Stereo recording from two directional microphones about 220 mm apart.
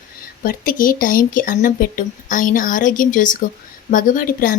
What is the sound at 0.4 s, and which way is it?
Speech, 40° left (ahead or behind).